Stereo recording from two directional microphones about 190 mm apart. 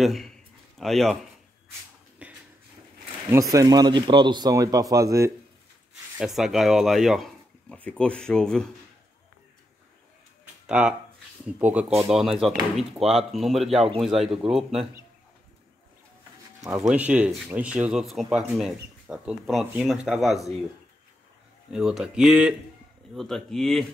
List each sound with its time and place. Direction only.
0.0 s a man's voice: centre (ahead or behind)
2.2 s a sound: 5° right (ahead or behind)
3.3 s speech: 15° right (ahead or behind)
6.1 s speech: centre (ahead or behind)
10.7 s speech: 5° right (ahead or behind)
16.8 s speech: 5° right (ahead or behind)
21.7 s speech: centre (ahead or behind)